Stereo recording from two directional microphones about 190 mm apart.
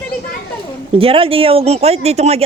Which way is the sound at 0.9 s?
30° right (ahead or behind).